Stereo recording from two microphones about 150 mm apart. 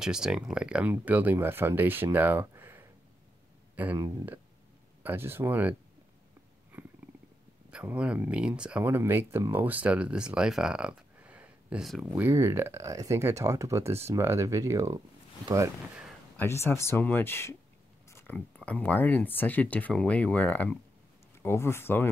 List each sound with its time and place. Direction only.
0.0 s speech: 5° right (ahead or behind)
7.7 s speech: 10° right (ahead or behind)
12.2 s speech: 20° right (ahead or behind)
16.3 s speech: 15° left (ahead or behind)
18.1 s a sound: 15° left (ahead or behind)
18.6 s speech: 10° left (ahead or behind)